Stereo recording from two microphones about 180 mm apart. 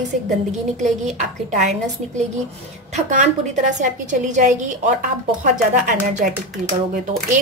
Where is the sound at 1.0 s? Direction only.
40° right (ahead or behind).